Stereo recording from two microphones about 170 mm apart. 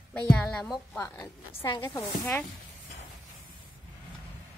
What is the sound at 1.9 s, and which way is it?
Speech, 15° left (ahead or behind).